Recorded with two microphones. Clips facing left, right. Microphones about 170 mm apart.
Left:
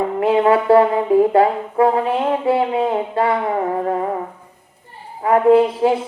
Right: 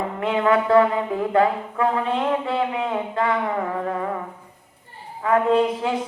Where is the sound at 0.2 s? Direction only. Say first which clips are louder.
Left 5 dB; 30° left (ahead or behind).